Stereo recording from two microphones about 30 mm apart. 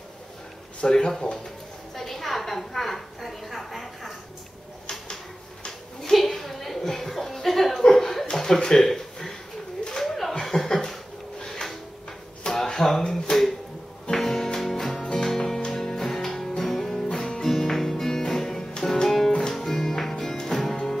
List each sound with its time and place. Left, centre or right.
0.8 s speech: left
2.0 s a sound: centre
6.2 s a sound: centre
7.4 s speech: centre
7.9 s chuckle: centre
8.5 s speech: left
8.8 s a sound: centre
10.0 s chuckle: centre
12.4 s a sound: centre
14.1 s music: centre
17.1 s music: left
17.5 s music: centre